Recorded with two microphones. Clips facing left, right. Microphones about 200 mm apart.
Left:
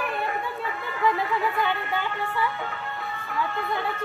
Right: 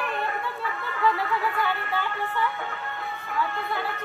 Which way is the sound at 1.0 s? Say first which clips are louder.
Left 1 dB; 15° left (ahead or behind).